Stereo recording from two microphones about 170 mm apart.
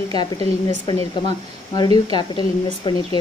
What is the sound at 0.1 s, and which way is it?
Speech, 25° left (ahead or behind).